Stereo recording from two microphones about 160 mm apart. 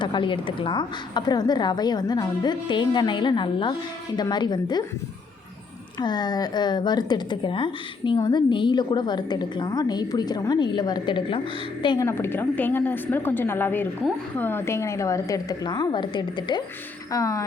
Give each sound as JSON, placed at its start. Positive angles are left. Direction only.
{"t": 0.0, "sound": "a woman's voice", "side_deg": 30}
{"t": 6.0, "sound": "a woman's voice", "side_deg": 25}
{"t": 12.0, "sound": "a woman's voice", "side_deg": 15}